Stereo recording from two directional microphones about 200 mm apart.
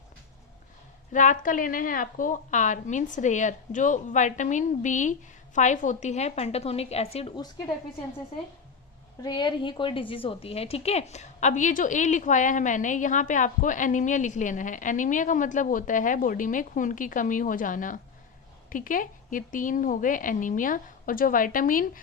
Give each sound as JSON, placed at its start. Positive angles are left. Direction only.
{"t": 1.1, "sound": "a woman's voice", "side_deg": 40}
{"t": 9.2, "sound": "a woman's voice", "side_deg": 20}